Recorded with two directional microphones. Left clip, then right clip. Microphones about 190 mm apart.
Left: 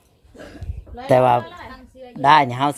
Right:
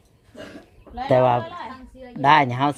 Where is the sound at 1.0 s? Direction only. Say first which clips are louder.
Left 3 dB; 20° left (ahead or behind).